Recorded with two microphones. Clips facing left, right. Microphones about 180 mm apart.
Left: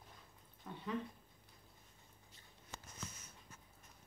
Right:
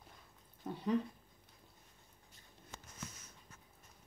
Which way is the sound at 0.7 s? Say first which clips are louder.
Right 7 dB; 40° right (ahead or behind).